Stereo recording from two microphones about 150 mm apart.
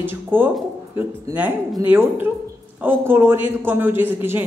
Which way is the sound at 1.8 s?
15° right (ahead or behind).